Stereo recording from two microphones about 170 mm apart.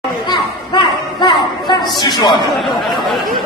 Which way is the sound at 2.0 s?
25° left (ahead or behind).